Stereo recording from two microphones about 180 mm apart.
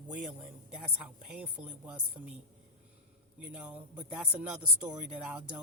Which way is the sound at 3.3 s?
5° right (ahead or behind).